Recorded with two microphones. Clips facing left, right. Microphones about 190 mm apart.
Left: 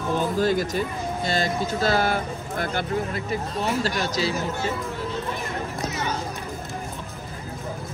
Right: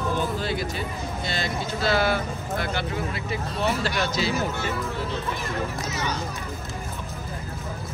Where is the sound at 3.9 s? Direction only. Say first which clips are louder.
Even; 40° left (ahead or behind).